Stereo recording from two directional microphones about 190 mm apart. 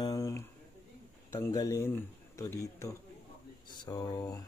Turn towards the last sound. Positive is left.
turn(degrees=20)  # may be behind; listen again after turning